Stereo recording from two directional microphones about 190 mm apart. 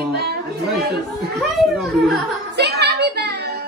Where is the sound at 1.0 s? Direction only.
Centre (ahead or behind).